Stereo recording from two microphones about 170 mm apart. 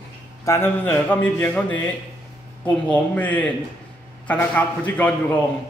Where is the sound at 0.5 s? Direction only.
15° left (ahead or behind).